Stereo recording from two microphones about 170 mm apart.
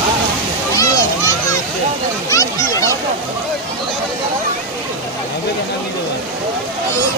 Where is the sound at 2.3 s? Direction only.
20° left (ahead or behind).